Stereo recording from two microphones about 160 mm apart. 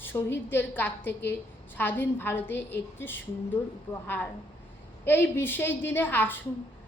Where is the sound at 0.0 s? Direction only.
15° left (ahead or behind).